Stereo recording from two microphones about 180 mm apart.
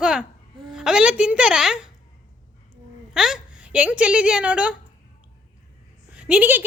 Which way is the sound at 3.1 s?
5° right (ahead or behind).